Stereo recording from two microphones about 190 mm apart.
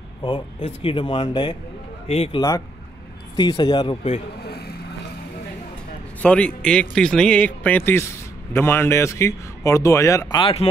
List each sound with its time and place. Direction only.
0.2 s speech: 25° left (ahead or behind)
4.5 s vehicle: 55° left (ahead or behind)
6.2 s a man's voice: 5° left (ahead or behind); by 10.7 s 30° left (ahead or behind)